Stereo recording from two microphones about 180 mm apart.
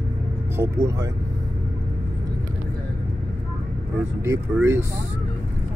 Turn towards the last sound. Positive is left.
turn(degrees=-15)  # may be behind; listen again after turning